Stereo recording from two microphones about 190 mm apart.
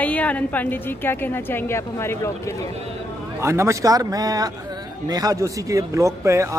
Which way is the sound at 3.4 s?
15° right (ahead or behind).